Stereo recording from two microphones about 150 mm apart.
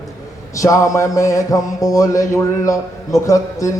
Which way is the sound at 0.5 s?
20° left (ahead or behind).